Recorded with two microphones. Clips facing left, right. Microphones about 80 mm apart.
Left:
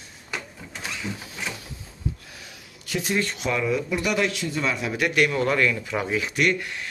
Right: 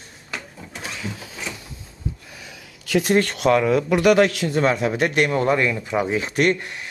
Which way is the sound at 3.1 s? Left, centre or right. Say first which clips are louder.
Right 8 dB; right.